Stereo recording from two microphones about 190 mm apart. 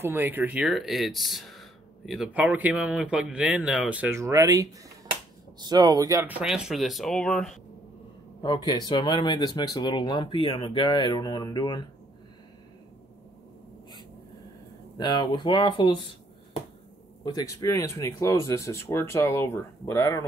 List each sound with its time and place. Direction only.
0.0 s speech: 10° right (ahead or behind)
8.6 s speech: 20° left (ahead or behind)
15.0 s speech: 20° left (ahead or behind)
17.2 s speech: 20° left (ahead or behind)